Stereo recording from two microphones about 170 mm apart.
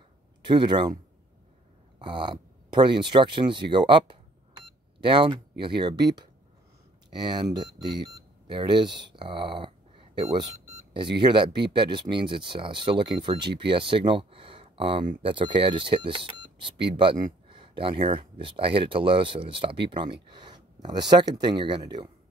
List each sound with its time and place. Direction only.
0.5 s speech: 25° right (ahead or behind)
2.0 s speech: 30° right (ahead or behind)